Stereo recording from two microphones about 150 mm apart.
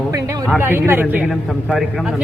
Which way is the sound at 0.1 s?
20° right (ahead or behind).